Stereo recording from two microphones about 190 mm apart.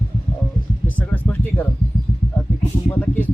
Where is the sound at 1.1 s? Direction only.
10° left (ahead or behind).